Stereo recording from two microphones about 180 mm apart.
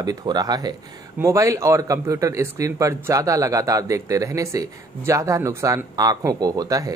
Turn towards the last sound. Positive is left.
turn(degrees=-20)  # may be behind; listen again after turning